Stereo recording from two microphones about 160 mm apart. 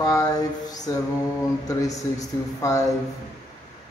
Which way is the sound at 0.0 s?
20° left (ahead or behind).